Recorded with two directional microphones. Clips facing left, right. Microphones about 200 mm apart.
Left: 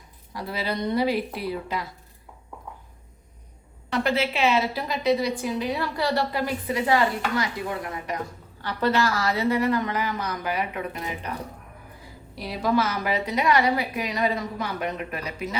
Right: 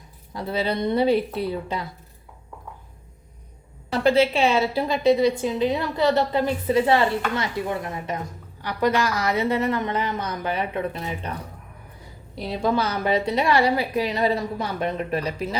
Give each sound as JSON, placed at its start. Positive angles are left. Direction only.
{"t": 0.3, "sound": "a woman's voice", "side_deg": -25}
{"t": 3.9, "sound": "a woman's voice", "side_deg": -30}
{"t": 12.4, "sound": "a woman's voice", "side_deg": -25}